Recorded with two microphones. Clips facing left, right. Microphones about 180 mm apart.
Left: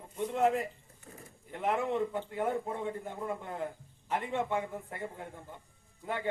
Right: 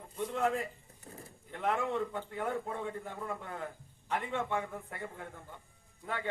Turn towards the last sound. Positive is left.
turn(degrees=20)  # may be behind; listen again after turning